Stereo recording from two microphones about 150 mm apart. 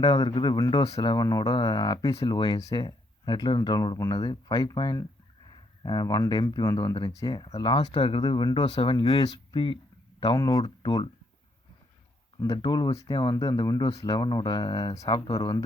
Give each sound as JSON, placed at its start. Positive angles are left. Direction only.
{"t": 0.0, "sound": "speech", "side_deg": 30}
{"t": 12.5, "sound": "speech", "side_deg": 30}